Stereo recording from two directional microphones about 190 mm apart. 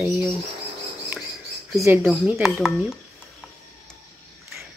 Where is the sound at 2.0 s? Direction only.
Centre (ahead or behind).